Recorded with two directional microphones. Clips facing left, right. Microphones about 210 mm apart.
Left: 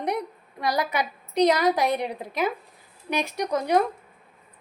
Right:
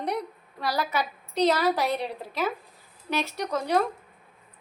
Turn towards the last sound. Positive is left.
turn(degrees=15)  # may be behind; listen again after turning